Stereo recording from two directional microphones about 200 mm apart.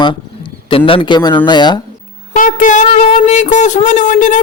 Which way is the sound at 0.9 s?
25° left (ahead or behind).